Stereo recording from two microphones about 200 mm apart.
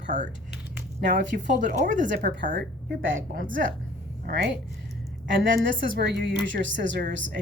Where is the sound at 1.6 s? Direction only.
40° right (ahead or behind).